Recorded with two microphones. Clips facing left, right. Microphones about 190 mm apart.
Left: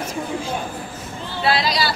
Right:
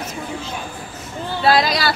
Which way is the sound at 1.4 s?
45° right (ahead or behind).